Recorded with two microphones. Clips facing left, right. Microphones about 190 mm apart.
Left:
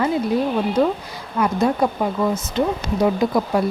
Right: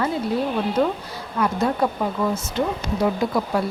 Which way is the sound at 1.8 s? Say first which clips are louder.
Left 2 dB; 15° left (ahead or behind).